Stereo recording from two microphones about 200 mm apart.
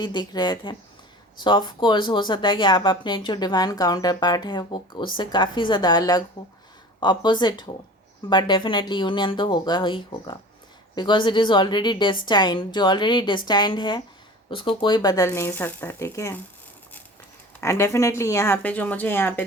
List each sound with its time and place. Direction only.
0.0 s speech: 20° left (ahead or behind)
17.6 s speech: 15° left (ahead or behind)